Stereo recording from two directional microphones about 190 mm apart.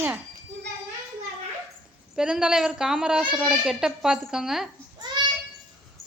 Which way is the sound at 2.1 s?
5° right (ahead or behind).